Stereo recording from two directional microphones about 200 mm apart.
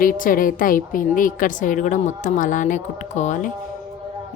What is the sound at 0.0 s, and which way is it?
A woman's voice, 45° left (ahead or behind).